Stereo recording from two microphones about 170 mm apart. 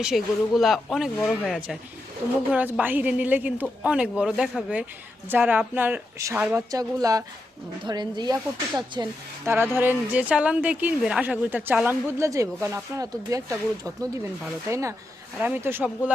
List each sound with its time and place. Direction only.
0.0 s speech: centre (ahead or behind)